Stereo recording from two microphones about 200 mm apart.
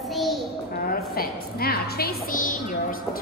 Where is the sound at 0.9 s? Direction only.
50° left (ahead or behind).